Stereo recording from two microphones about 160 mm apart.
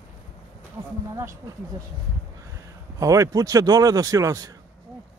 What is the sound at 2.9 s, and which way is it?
Speech, 20° right (ahead or behind).